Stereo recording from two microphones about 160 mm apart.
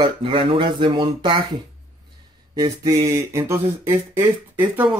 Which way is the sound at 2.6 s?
20° right (ahead or behind).